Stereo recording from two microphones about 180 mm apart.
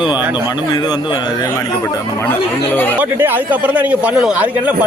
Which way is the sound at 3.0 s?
10° right (ahead or behind).